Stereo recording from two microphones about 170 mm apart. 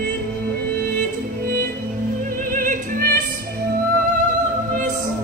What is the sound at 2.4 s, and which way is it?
Opera, 55° right (ahead or behind).